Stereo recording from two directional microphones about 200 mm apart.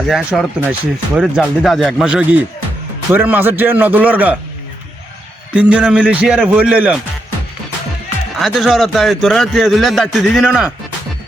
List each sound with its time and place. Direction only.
0.1 s a man's voice: 5° right (ahead or behind)
5.5 s a man's voice: 5° right (ahead or behind)
8.4 s a man's voice: centre (ahead or behind)